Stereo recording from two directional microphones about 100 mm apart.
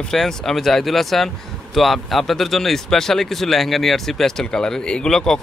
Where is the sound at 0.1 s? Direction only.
5° left (ahead or behind).